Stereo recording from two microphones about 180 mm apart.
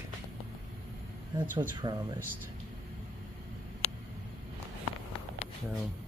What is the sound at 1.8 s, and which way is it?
Speech, 25° right (ahead or behind).